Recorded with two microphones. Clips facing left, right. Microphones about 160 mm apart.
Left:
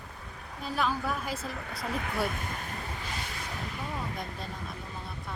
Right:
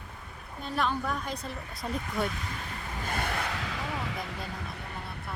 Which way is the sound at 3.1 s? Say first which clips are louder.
Right 6 dB; 60° right (ahead or behind).